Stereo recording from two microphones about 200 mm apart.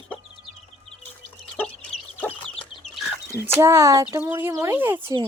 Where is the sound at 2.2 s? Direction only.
5° left (ahead or behind).